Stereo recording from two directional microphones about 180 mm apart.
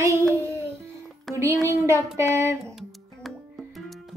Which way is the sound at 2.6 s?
Centre (ahead or behind).